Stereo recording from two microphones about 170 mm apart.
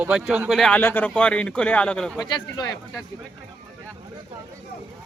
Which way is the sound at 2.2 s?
25° left (ahead or behind).